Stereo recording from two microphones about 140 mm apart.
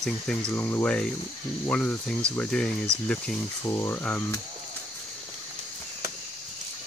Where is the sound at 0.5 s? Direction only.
15° left (ahead or behind).